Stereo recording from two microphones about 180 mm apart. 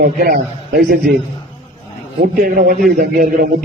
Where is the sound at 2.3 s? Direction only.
55° right (ahead or behind).